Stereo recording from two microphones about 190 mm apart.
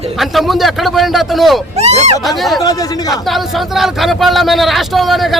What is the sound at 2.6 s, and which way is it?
Speech, 20° left (ahead or behind).